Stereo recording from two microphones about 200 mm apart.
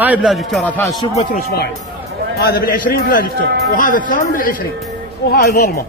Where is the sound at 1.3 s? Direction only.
50° left (ahead or behind).